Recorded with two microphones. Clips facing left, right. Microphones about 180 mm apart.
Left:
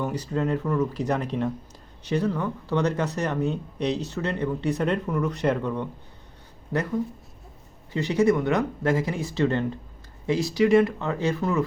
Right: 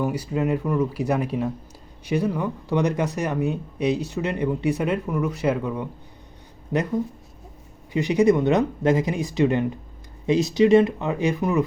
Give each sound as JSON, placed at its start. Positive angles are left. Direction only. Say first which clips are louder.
{"t": 0.0, "sound": "speech", "louder": "right 3 dB", "side_deg": -10}
{"t": 6.7, "sound": "speech", "louder": "right 3 dB", "side_deg": -20}
{"t": 7.9, "sound": "speech", "louder": "right 3 dB", "side_deg": -15}